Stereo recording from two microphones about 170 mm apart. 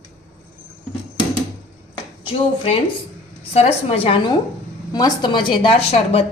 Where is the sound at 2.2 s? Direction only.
35° left (ahead or behind).